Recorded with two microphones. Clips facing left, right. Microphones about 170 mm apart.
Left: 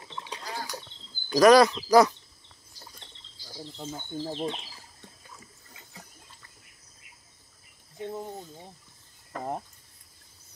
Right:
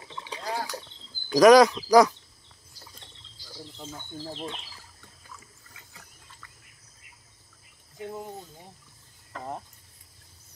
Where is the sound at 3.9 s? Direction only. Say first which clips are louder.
Left 5 dB; 25° left (ahead or behind).